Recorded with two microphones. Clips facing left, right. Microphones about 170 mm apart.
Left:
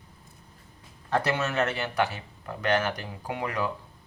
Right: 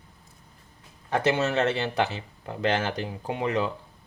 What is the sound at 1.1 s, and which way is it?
Speech, 25° right (ahead or behind).